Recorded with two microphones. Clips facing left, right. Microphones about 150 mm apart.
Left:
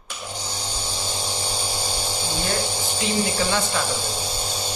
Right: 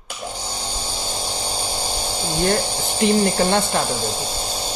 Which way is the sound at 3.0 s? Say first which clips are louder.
Right 7 dB; 50° right (ahead or behind).